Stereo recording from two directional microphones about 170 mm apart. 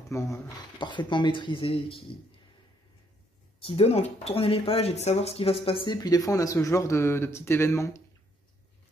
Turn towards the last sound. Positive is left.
turn(degrees=15)  # may be behind; listen again after turning